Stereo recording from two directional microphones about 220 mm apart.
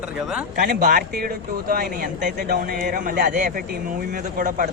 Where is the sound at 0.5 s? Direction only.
40° right (ahead or behind).